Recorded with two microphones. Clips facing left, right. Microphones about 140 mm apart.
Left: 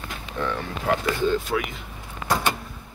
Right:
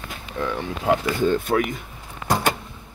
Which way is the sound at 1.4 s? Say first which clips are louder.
Right 5 dB; 50° right (ahead or behind).